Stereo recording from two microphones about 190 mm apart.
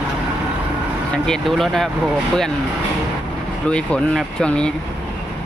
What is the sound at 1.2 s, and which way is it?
Speech, centre (ahead or behind).